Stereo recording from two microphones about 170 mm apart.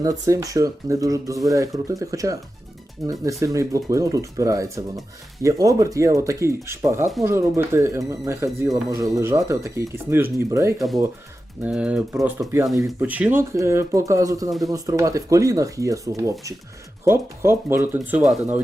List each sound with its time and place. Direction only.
0.0 s speech: 20° right (ahead or behind)